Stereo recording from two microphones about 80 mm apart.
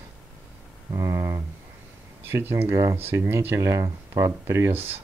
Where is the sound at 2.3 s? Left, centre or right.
Right.